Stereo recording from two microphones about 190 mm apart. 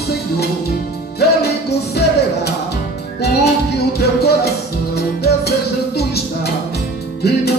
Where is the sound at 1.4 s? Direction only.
60° left (ahead or behind).